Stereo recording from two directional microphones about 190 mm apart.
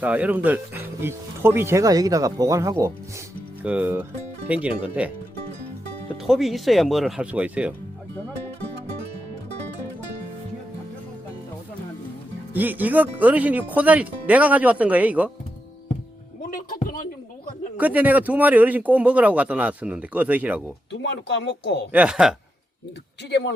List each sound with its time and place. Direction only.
0.0 s speech: 10° right (ahead or behind)
6.2 s speech: centre (ahead or behind)
12.5 s speech: 10° right (ahead or behind)
16.5 s music: 50° left (ahead or behind)
17.7 s speech: 10° right (ahead or behind)
21.0 s speech: 65° left (ahead or behind)
21.9 s speech: 5° right (ahead or behind)
23.3 s speech: 65° left (ahead or behind)